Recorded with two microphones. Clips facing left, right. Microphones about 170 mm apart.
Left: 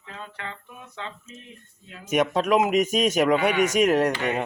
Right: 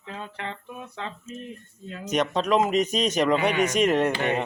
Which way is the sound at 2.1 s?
5° left (ahead or behind).